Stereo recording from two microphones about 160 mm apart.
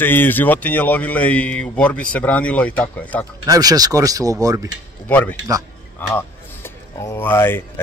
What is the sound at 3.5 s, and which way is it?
Speech, 25° right (ahead or behind).